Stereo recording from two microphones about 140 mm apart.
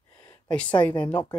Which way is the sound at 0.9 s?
10° left (ahead or behind).